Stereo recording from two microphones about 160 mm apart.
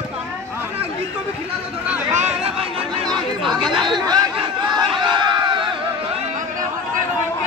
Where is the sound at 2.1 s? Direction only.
45° right (ahead or behind).